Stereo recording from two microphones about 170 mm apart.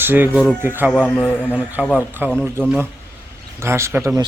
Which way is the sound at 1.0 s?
Centre (ahead or behind).